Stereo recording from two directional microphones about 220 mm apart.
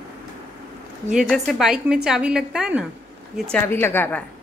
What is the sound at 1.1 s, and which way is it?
A woman's voice, centre (ahead or behind).